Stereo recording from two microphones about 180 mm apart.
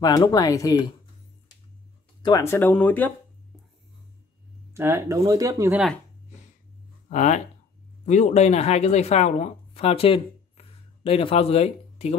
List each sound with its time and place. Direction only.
0.0 s speech: 20° left (ahead or behind)
2.2 s speech: 20° left (ahead or behind)
4.7 s speech: 15° right (ahead or behind)
7.1 s speech: 40° left (ahead or behind)